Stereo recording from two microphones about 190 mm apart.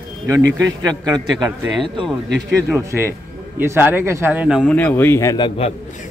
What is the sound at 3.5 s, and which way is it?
Speech, 10° right (ahead or behind).